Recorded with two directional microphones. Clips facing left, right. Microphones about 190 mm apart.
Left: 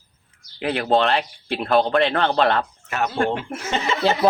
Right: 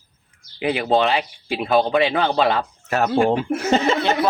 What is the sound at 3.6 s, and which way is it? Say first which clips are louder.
Speech: right 6 dB; 35° right (ahead or behind).